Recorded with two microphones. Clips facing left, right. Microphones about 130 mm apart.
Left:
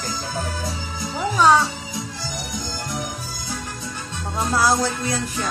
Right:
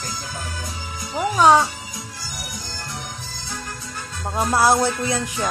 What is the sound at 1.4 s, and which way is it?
Speech, 25° right (ahead or behind).